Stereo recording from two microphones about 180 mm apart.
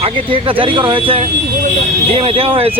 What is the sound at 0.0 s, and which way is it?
Speech, 30° right (ahead or behind).